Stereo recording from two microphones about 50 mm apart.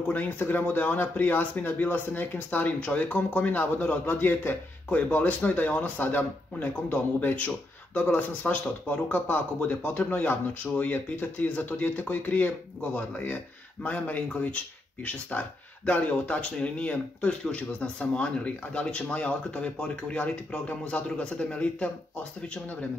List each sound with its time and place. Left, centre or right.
0.1 s speech: left
2.8 s speech: left